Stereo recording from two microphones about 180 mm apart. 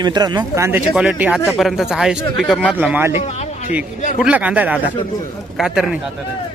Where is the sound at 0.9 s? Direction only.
5° right (ahead or behind).